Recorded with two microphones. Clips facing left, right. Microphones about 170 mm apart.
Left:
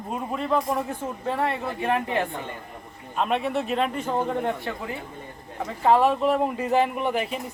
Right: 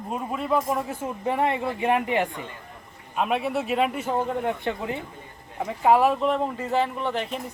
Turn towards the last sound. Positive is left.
turn(degrees=5)  # may be behind; listen again after turning